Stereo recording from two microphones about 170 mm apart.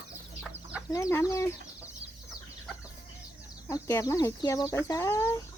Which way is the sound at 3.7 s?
20° left (ahead or behind).